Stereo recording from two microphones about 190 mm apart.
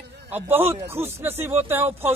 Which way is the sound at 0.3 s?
10° right (ahead or behind).